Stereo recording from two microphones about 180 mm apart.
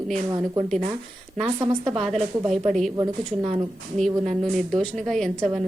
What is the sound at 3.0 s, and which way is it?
Speech, 25° right (ahead or behind).